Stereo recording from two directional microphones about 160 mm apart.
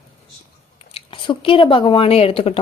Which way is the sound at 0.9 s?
30° left (ahead or behind).